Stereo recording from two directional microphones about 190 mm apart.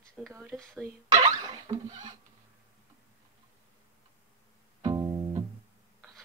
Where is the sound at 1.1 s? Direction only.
20° right (ahead or behind).